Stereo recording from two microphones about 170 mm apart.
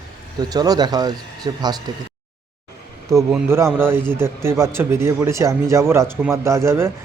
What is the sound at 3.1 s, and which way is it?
Speech, 20° right (ahead or behind).